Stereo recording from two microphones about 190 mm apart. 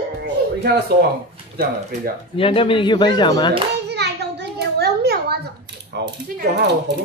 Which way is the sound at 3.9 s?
60° right (ahead or behind).